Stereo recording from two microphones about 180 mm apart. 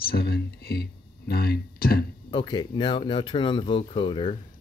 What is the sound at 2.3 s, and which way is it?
Speech, 25° left (ahead or behind).